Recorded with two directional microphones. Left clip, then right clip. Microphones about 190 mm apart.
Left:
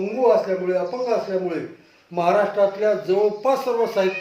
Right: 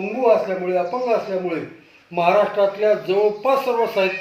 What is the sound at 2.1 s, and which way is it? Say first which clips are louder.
Speech: right 2 dB; 15° left (ahead or behind).